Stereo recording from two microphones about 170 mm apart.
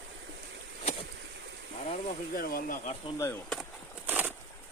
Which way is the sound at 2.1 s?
55° left (ahead or behind).